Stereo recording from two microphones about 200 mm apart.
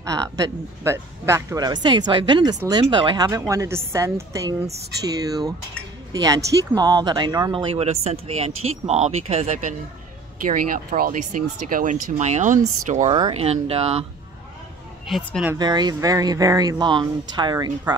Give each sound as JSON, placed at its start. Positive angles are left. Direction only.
{"t": 0.0, "sound": "a woman's voice", "side_deg": -15}
{"t": 7.7, "sound": "speech", "side_deg": -30}
{"t": 15.0, "sound": "a woman's voice", "side_deg": 0}
{"t": 15.5, "sound": "speech", "side_deg": -20}